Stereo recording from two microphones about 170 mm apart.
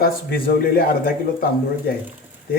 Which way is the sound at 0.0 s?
60° left (ahead or behind).